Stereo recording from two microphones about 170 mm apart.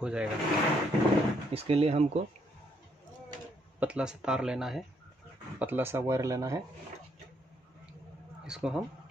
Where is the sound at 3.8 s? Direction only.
5° right (ahead or behind).